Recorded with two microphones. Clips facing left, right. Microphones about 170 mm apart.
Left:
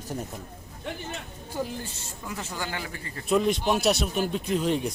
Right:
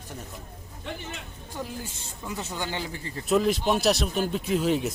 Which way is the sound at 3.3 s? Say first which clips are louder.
Even; centre (ahead or behind).